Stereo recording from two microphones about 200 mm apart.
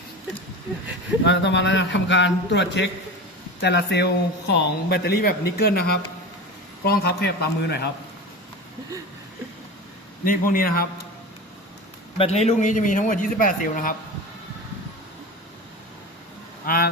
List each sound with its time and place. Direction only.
1.2 s a man's voice: 65° left (ahead or behind)
10.2 s a man's voice: 45° left (ahead or behind)
12.1 s a man's voice: 30° left (ahead or behind)
16.6 s a man's voice: 50° left (ahead or behind)